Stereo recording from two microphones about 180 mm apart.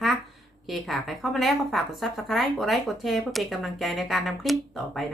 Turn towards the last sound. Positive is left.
turn(degrees=0)  # may be behind; listen again after turning